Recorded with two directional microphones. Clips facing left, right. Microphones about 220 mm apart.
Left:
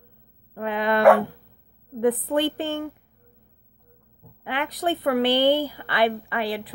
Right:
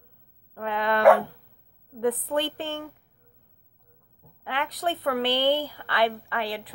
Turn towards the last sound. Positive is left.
turn(degrees=5)  # may be behind; listen again after turning